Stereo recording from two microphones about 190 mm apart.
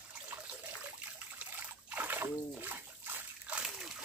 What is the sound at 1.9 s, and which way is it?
Splash, 10° right (ahead or behind).